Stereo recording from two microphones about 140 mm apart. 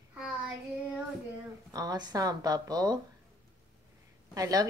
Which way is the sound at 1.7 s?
25° right (ahead or behind).